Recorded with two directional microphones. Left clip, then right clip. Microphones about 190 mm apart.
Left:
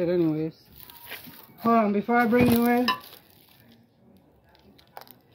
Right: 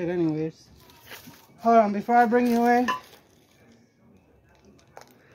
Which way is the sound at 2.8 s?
55° left (ahead or behind).